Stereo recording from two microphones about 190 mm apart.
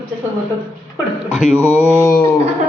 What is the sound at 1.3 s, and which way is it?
Speech, 5° right (ahead or behind).